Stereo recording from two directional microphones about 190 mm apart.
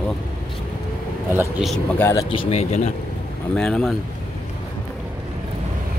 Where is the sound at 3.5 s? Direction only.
5° left (ahead or behind).